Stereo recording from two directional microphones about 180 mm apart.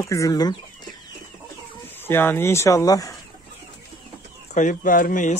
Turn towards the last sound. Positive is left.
turn(degrees=45)  # may be behind; listen again after turning